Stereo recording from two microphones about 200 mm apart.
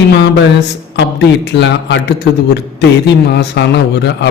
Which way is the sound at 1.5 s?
60° left (ahead or behind).